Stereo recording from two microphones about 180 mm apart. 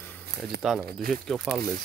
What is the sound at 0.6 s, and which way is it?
Speech, centre (ahead or behind).